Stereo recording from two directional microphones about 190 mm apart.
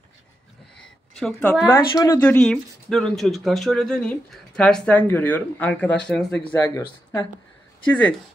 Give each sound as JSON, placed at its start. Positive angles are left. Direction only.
{"t": 0.7, "sound": "a sound", "side_deg": 5}
{"t": 1.7, "sound": "speech", "side_deg": 15}
{"t": 2.1, "sound": "speech", "side_deg": 5}